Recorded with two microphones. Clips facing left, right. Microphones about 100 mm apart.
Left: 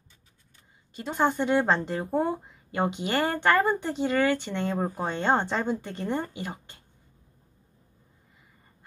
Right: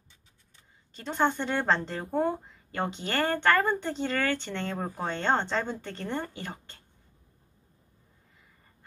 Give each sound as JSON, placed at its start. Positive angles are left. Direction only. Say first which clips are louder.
{"t": 0.9, "sound": "speech", "louder": "left 2 dB", "side_deg": 10}